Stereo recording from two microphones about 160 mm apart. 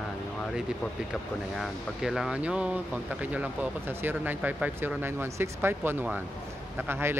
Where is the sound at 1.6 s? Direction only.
Centre (ahead or behind).